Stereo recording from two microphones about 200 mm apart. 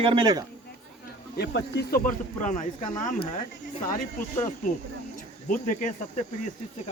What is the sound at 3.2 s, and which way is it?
Speech, 30° left (ahead or behind).